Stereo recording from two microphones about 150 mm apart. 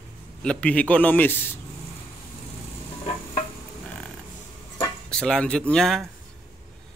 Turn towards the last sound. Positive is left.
turn(degrees=5)  # may be behind; listen again after turning